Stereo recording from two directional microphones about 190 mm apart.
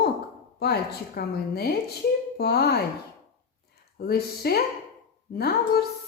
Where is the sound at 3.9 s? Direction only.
55° left (ahead or behind).